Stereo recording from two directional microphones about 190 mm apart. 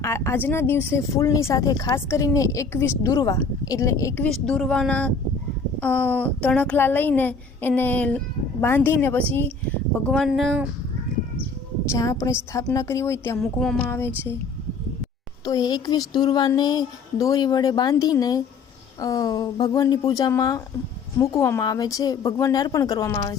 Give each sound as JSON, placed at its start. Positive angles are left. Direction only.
{"t": 0.0, "sound": "speech", "side_deg": 15}
{"t": 4.4, "sound": "speech", "side_deg": 5}
{"t": 10.1, "sound": "speech", "side_deg": 0}
{"t": 11.9, "sound": "speech", "side_deg": 15}
{"t": 13.4, "sound": "speech", "side_deg": 5}
{"t": 15.4, "sound": "a sound", "side_deg": 20}
{"t": 21.2, "sound": "speech", "side_deg": 15}